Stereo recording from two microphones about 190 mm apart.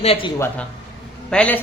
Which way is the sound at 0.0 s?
30° left (ahead or behind).